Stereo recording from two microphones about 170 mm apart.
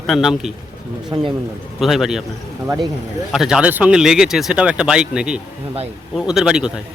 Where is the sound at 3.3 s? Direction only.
5° right (ahead or behind).